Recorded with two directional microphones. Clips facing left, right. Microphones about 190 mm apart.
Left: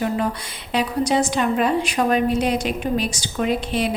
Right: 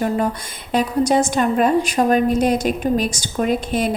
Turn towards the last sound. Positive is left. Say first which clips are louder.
# right 2 dB
turn(degrees=-45)  # may be behind; listen again after turning